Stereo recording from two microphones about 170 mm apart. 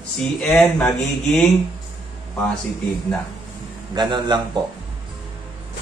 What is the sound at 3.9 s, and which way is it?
Speech, 25° right (ahead or behind).